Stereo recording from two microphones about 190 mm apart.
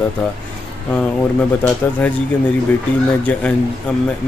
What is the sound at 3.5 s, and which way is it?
Speech, 5° left (ahead or behind).